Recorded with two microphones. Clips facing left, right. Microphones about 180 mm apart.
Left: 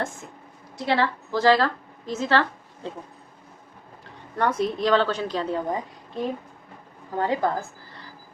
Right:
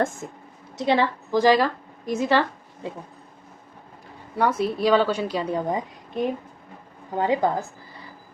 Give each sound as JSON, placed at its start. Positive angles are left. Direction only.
{"t": 0.8, "sound": "a woman's voice", "side_deg": -15}
{"t": 4.4, "sound": "a woman's voice", "side_deg": -5}